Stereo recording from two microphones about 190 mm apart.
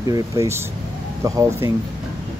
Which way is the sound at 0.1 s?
15° right (ahead or behind).